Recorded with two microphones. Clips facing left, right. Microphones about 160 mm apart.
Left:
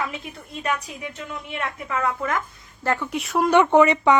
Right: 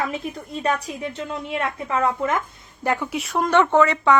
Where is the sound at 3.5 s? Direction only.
15° left (ahead or behind).